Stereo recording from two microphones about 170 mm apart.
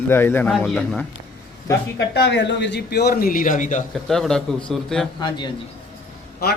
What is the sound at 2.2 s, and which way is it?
A man's voice, 85° left.